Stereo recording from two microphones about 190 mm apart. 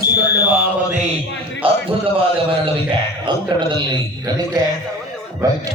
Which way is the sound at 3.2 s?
25° right (ahead or behind).